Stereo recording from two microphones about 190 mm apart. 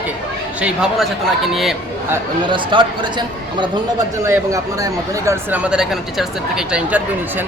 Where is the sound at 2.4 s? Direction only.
25° right (ahead or behind).